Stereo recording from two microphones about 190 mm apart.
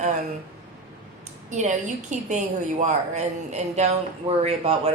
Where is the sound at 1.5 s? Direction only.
40° right (ahead or behind).